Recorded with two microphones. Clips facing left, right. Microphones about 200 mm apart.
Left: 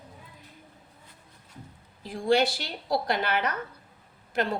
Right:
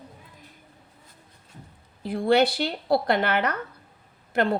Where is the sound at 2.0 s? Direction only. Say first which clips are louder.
Right 3 dB; 60° right (ahead or behind).